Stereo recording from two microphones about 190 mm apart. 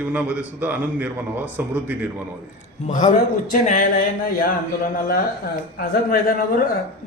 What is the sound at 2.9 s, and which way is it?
A man's voice, 45° left (ahead or behind).